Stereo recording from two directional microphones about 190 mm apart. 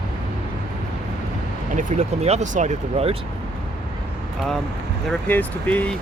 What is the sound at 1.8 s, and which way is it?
Speech, 40° right (ahead or behind).